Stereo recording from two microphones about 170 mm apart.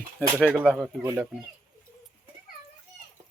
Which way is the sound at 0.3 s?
5° right (ahead or behind).